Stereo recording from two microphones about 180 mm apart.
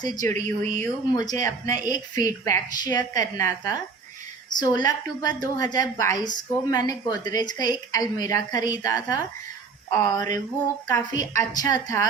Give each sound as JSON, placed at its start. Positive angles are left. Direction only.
{"t": 0.0, "sound": "a woman's voice", "side_deg": 20}
{"t": 0.4, "sound": "speech", "side_deg": 10}
{"t": 1.1, "sound": "a woman's voice", "side_deg": 20}